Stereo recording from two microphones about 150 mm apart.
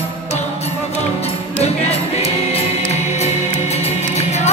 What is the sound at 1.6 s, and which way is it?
Music, 45° left (ahead or behind).